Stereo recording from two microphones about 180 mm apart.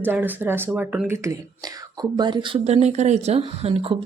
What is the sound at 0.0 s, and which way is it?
A woman's voice, 10° right (ahead or behind).